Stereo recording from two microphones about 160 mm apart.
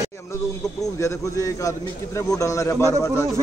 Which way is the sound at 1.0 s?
20° left (ahead or behind).